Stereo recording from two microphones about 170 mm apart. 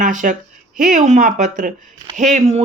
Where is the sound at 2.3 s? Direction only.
40° right (ahead or behind).